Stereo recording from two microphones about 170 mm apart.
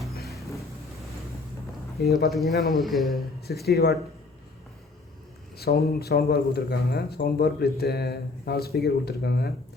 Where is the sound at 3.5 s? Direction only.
70° left (ahead or behind).